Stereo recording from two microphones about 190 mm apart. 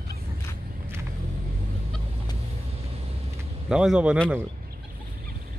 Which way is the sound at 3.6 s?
5° right (ahead or behind).